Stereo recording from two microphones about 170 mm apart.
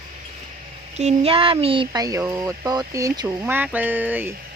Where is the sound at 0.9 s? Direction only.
40° right (ahead or behind); by 3.4 s 20° right (ahead or behind).